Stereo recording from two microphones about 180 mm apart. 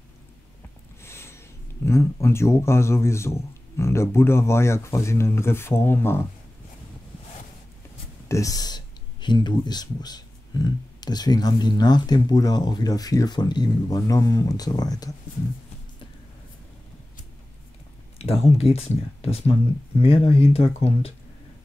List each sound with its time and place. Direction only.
1.0 s a sound: 15° left (ahead or behind)
1.9 s a man's voice: 15° left (ahead or behind)
8.3 s speech: 20° left (ahead or behind)
18.2 s speech: 35° left (ahead or behind)